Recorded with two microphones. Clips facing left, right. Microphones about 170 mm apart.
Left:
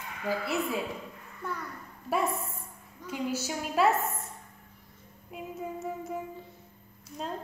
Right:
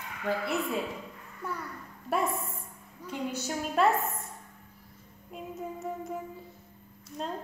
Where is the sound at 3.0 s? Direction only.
5° left (ahead or behind).